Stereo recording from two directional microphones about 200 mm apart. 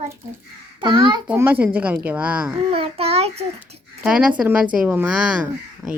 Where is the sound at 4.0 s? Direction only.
5° right (ahead or behind).